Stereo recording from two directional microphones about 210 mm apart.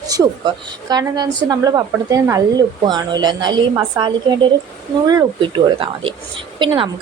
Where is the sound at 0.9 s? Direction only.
20° right (ahead or behind).